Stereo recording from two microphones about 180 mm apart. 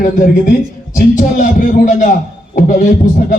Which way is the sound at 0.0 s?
50° left (ahead or behind).